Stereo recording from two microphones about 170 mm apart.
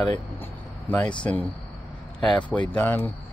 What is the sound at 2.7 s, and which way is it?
Speech, 10° left (ahead or behind).